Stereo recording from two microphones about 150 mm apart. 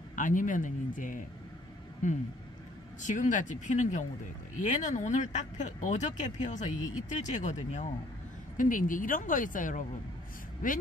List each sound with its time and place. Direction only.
0.1 s speech: 60° left (ahead or behind)